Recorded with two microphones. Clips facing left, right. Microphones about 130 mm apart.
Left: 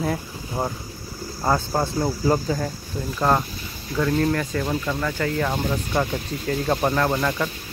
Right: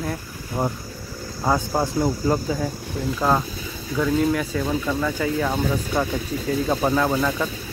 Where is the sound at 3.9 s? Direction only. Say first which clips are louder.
Right 1 dB; 5° right (ahead or behind).